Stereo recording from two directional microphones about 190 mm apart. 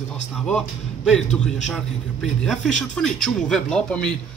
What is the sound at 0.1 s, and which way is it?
Speech, 5° left (ahead or behind).